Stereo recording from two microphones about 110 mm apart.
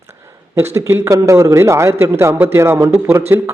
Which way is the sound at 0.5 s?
25° right (ahead or behind).